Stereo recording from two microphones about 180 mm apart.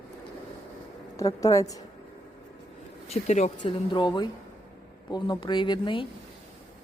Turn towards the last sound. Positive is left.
turn(degrees=25)  # may be behind; listen again after turning